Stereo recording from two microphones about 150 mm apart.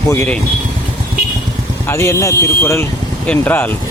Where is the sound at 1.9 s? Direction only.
20° left (ahead or behind).